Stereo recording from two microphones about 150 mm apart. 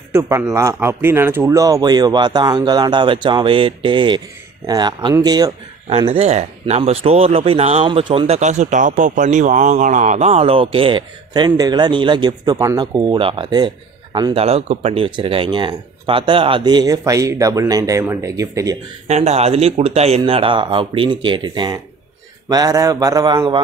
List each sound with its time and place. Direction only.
0.1 s speech: 15° right (ahead or behind)
5.9 s speech: 40° right (ahead or behind)
14.4 s speech: 45° right (ahead or behind); by 18.8 s 20° right (ahead or behind)
19.0 s speech: 45° right (ahead or behind); by 23.6 s 30° right (ahead or behind)